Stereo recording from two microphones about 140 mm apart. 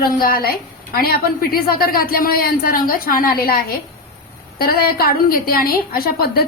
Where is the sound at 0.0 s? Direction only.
90° left.